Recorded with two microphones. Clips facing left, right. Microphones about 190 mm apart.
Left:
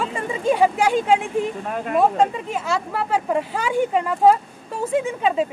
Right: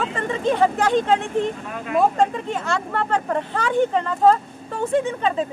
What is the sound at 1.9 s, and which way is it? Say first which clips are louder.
Speech: even; 5° left (ahead or behind).